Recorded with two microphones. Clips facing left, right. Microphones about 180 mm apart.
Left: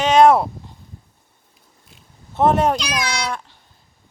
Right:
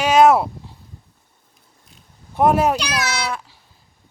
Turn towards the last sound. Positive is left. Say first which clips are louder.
# even
turn(degrees=-5)  # may be behind; listen again after turning